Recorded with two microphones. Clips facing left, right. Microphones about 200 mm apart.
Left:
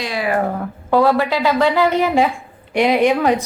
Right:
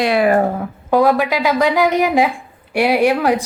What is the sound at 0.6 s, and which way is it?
A woman's voice, 15° right (ahead or behind).